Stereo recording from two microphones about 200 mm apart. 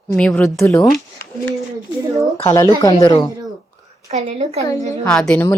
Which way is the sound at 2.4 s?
15° left (ahead or behind).